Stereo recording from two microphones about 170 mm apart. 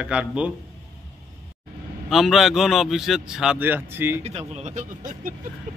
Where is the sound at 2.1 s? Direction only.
Centre (ahead or behind).